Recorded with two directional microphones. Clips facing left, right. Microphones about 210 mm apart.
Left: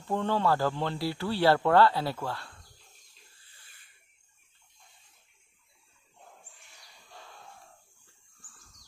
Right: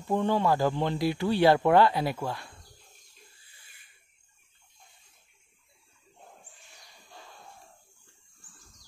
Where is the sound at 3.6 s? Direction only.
15° right (ahead or behind).